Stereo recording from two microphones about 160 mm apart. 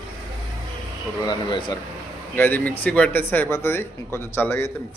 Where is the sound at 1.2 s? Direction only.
30° left (ahead or behind).